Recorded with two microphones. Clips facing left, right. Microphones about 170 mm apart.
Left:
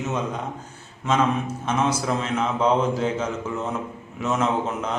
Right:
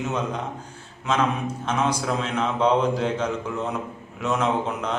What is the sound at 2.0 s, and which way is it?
Speech, centre (ahead or behind).